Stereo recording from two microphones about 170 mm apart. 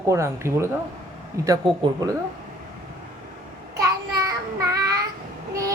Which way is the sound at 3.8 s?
20° right (ahead or behind).